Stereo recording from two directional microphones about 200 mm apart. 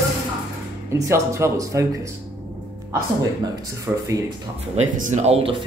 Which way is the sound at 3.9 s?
10° right (ahead or behind).